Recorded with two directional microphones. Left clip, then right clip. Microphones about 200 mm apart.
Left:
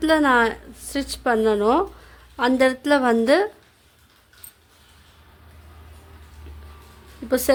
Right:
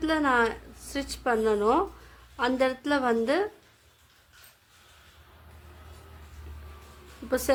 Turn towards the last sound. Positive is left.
turn(degrees=30)  # may be behind; listen again after turning